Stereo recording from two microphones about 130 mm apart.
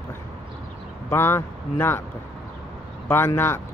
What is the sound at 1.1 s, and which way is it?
Speech, 20° left (ahead or behind).